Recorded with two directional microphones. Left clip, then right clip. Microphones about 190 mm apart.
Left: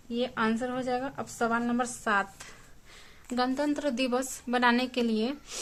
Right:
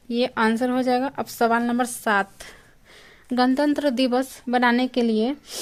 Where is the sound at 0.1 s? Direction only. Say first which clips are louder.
Right 8 dB; 55° right (ahead or behind).